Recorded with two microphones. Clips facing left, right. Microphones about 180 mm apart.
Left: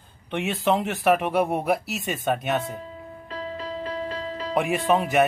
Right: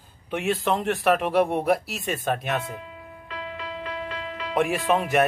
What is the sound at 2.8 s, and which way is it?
Music, 35° left (ahead or behind).